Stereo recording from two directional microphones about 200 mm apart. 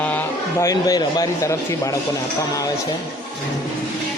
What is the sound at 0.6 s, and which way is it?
A man's voice, 15° left (ahead or behind).